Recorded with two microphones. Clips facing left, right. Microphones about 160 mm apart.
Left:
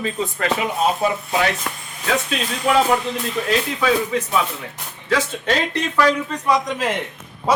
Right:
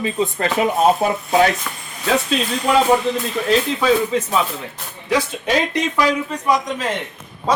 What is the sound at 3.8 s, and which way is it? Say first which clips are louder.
Speech: right 3 dB; 25° right (ahead or behind).